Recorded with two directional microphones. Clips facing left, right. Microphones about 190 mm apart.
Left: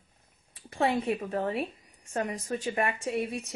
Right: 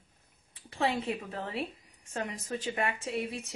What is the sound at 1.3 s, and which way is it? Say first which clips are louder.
Speech: left 6 dB; 40° left (ahead or behind).